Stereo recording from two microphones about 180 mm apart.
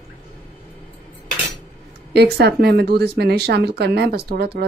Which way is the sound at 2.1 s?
65° right (ahead or behind).